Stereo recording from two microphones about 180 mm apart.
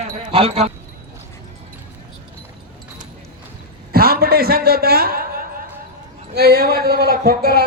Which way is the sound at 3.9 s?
55° right (ahead or behind).